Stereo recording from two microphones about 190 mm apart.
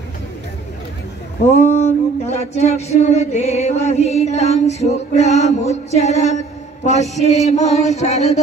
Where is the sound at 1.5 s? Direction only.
35° left (ahead or behind).